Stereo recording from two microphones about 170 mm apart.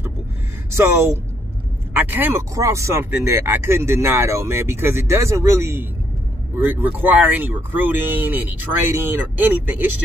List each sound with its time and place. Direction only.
0.7 s speech: 15° right (ahead or behind)